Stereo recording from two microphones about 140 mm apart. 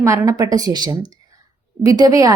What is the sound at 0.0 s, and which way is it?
Speech, 20° right (ahead or behind).